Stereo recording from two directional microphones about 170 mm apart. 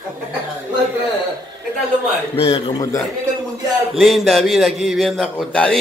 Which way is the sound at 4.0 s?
Centre (ahead or behind).